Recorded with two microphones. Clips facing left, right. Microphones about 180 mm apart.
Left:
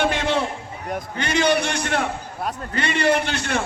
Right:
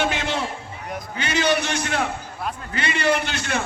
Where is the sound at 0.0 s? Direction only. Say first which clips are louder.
Left 3 dB; 55° left (ahead or behind).